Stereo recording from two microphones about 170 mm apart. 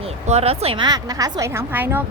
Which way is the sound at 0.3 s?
35° right (ahead or behind).